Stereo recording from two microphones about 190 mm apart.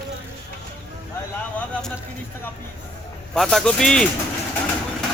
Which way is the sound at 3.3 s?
Centre (ahead or behind).